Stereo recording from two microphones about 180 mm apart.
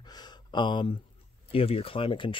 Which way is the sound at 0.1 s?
25° left (ahead or behind).